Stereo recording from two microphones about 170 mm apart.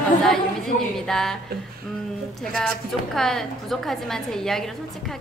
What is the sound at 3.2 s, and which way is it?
A woman's voice, centre (ahead or behind).